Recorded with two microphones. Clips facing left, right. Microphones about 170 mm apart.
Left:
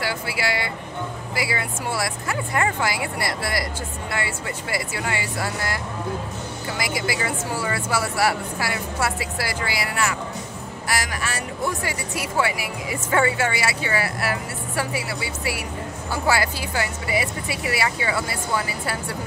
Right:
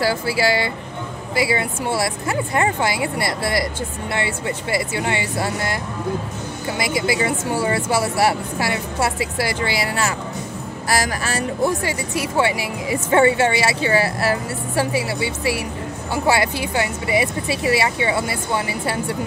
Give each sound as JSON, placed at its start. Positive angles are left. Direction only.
{"t": 0.0, "sound": "speech", "side_deg": -35}
{"t": 6.8, "sound": "speech", "side_deg": -25}